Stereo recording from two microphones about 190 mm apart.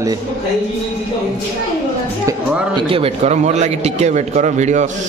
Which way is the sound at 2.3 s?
25° right (ahead or behind).